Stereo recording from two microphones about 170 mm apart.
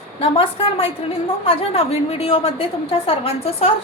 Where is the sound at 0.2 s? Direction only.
35° left (ahead or behind).